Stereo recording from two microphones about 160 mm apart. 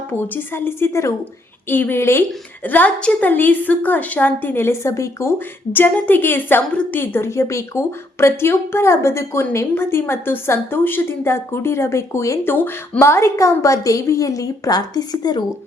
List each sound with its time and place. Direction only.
0.1 s a woman's voice: 15° left (ahead or behind)